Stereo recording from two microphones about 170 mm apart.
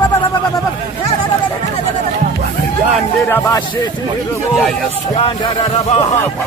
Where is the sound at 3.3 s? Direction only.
10° left (ahead or behind).